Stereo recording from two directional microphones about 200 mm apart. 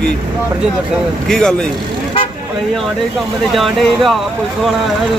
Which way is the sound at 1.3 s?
5° left (ahead or behind).